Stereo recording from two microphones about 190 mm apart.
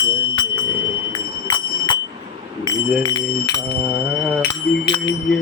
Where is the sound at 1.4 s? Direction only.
20° left (ahead or behind).